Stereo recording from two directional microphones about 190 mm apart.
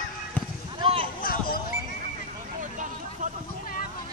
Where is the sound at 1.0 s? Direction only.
50° left (ahead or behind).